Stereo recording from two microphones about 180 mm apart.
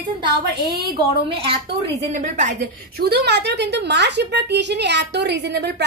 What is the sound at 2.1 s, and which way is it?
A woman's voice, 45° right (ahead or behind).